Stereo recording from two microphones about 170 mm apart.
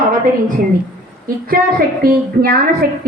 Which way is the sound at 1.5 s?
60° right (ahead or behind).